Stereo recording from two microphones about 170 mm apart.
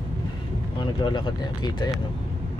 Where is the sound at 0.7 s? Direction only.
25° left (ahead or behind).